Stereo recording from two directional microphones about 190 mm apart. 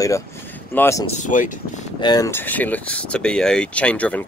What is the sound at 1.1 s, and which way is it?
Speech, 40° left (ahead or behind).